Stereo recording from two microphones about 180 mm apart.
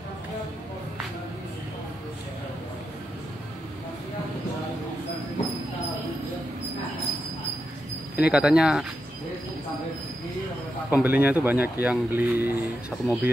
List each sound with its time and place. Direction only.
8.2 s speech: 5° right (ahead or behind)
10.9 s speech: 10° right (ahead or behind)